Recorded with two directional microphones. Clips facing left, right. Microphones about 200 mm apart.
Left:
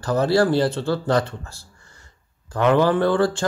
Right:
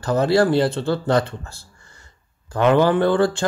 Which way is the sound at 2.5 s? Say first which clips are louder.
Right 1 dB; 25° right (ahead or behind).